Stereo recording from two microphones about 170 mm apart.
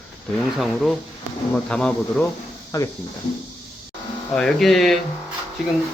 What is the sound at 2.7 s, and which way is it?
Speech, 20° left (ahead or behind).